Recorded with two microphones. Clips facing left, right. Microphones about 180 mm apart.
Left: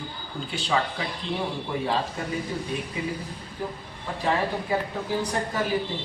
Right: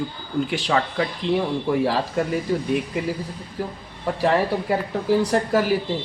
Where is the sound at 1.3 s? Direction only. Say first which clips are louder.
Right 10 dB; 80° right.